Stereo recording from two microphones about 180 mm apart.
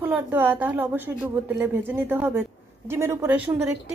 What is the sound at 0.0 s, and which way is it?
A woman's voice, 10° right (ahead or behind).